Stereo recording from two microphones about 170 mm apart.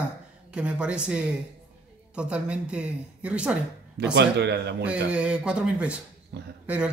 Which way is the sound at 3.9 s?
85° right.